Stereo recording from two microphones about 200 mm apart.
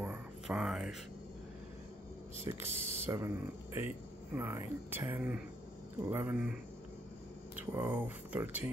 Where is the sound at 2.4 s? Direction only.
10° right (ahead or behind).